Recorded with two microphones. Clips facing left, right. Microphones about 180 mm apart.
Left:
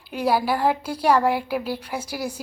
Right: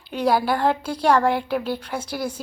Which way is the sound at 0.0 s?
5° left (ahead or behind).